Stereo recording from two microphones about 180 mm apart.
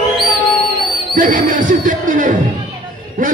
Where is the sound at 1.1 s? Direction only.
50° right (ahead or behind).